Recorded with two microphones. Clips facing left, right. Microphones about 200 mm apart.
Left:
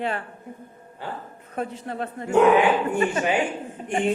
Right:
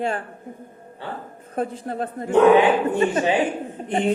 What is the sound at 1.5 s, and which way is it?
Speech, 35° right (ahead or behind).